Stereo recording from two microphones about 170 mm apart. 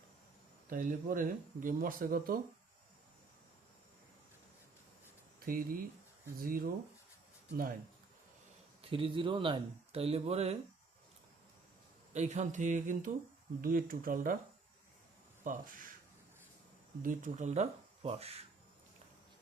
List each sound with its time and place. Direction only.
0.7 s speech: 55° right (ahead or behind)
5.5 s speech: 55° right (ahead or behind)
8.8 s speech: 30° right (ahead or behind)
12.1 s speech: 45° right (ahead or behind)
15.4 s speech: 55° right (ahead or behind)
17.0 s speech: 50° right (ahead or behind)